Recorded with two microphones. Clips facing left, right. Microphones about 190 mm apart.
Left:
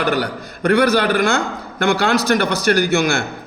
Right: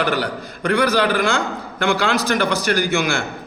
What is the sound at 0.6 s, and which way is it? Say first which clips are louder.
A man's voice: left 3 dB; 45° left (ahead or behind).